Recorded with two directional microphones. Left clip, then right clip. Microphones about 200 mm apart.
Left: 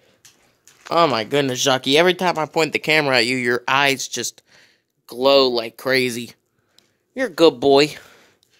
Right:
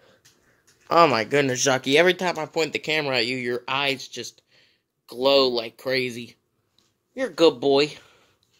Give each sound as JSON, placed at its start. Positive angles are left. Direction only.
{"t": 1.0, "sound": "speech", "side_deg": 20}